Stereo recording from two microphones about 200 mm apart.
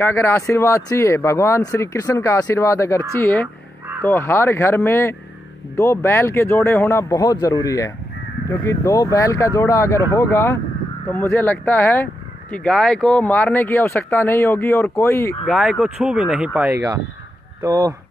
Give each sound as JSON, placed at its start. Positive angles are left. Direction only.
{"t": 0.0, "sound": "speech", "side_deg": 10}
{"t": 15.4, "sound": "speech", "side_deg": 0}